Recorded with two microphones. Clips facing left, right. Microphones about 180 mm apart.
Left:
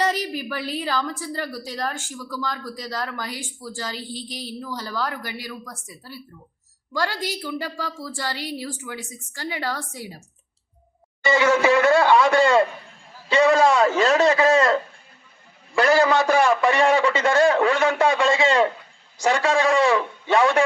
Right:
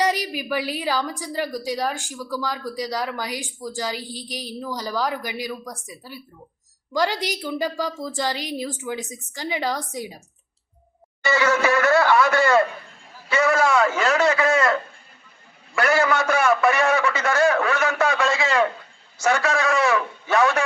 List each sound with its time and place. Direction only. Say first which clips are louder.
0.0 s a woman's voice: right 1 dB; 15° right (ahead or behind)
11.6 s a man's voice: left 2 dB; 25° left (ahead or behind)